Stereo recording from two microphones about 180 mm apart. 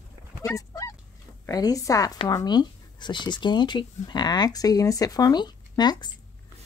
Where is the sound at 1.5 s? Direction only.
20° left (ahead or behind).